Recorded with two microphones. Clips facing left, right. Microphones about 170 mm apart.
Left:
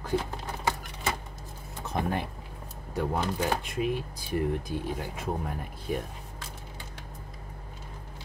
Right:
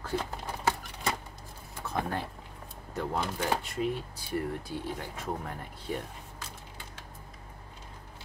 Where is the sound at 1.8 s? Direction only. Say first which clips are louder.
Left 2 dB; 15° left (ahead or behind).